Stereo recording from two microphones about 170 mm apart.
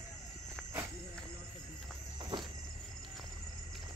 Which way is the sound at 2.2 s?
25° right (ahead or behind).